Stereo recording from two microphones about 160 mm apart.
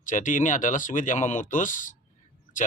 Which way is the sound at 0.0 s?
55° left (ahead or behind).